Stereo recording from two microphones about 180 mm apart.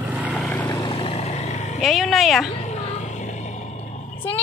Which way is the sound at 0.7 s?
25° left (ahead or behind).